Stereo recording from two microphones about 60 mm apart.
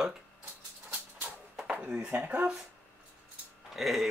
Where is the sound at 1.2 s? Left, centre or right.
Centre.